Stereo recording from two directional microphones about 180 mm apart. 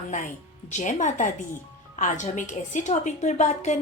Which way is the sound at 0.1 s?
45° left (ahead or behind).